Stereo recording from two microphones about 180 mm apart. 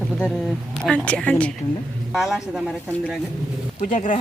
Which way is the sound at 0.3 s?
Centre (ahead or behind).